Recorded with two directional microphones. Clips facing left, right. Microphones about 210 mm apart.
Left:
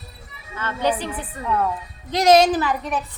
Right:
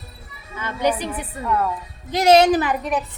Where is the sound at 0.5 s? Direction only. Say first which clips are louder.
Right 1 dB; 10° right (ahead or behind).